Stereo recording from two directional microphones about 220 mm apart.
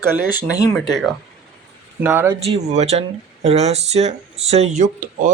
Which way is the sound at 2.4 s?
30° right (ahead or behind).